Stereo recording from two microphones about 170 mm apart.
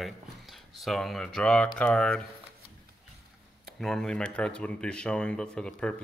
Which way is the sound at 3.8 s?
Centre (ahead or behind).